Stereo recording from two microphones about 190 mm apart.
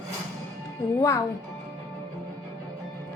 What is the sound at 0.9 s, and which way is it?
Speech, 15° left (ahead or behind).